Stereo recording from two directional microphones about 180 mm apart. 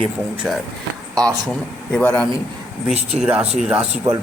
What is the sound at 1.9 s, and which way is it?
Speech, 10° left (ahead or behind).